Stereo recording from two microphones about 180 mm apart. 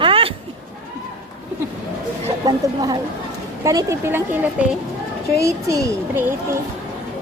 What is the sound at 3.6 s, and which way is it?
Speech, 20° right (ahead or behind).